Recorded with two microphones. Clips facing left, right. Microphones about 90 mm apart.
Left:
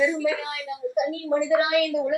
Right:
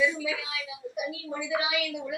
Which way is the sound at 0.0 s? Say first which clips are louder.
Left 5 dB; 50° left (ahead or behind).